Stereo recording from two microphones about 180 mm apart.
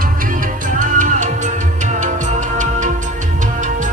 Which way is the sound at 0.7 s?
45° right (ahead or behind).